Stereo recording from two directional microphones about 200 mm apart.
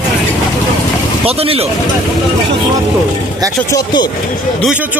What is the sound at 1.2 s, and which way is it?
Speech, 30° right (ahead or behind).